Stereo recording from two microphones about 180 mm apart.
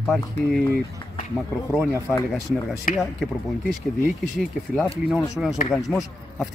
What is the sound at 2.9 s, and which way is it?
Speech, 45° left (ahead or behind).